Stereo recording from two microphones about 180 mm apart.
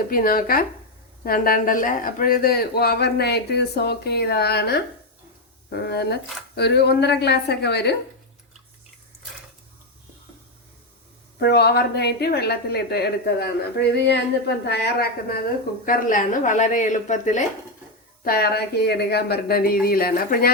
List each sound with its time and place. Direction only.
0.1 s a woman's voice: 55° left (ahead or behind)
11.3 s speech: 65° left (ahead or behind)
15.9 s speech: 45° left (ahead or behind)
18.2 s speech: 55° left (ahead or behind)